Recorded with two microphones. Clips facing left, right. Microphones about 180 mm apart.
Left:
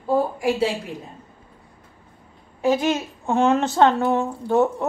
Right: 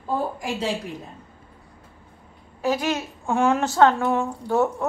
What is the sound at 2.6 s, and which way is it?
A child's voice, 25° left (ahead or behind).